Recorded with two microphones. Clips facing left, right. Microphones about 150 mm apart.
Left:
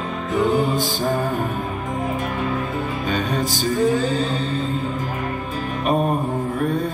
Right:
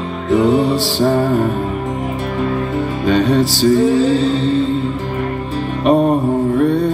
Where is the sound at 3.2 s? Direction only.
90° right.